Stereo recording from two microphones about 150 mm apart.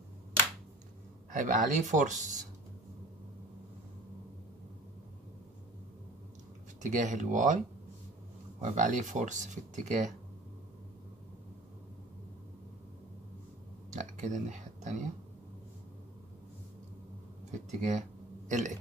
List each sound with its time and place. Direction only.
1.3 s speech: 60° right (ahead or behind)
6.8 s speech: 55° right (ahead or behind)
13.9 s speech: 55° right (ahead or behind)
17.5 s speech: 50° right (ahead or behind)